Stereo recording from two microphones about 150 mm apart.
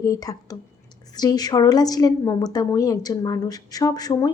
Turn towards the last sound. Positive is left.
turn(degrees=25)  # may be behind; listen again after turning